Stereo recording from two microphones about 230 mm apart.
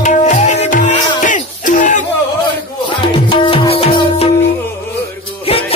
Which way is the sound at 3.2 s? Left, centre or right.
Left.